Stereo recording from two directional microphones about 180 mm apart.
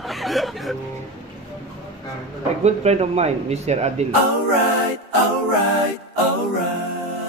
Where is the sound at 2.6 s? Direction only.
35° right (ahead or behind).